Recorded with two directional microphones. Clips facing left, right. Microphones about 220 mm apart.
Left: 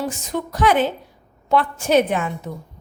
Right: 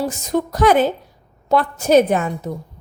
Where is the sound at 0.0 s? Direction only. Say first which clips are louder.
Right 5 dB; 40° right (ahead or behind).